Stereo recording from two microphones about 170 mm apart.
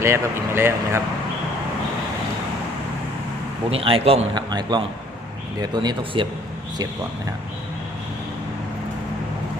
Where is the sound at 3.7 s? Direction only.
35° right (ahead or behind).